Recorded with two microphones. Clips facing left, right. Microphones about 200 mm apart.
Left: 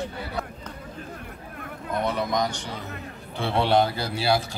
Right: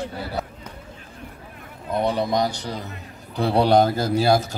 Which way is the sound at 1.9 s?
30° right (ahead or behind).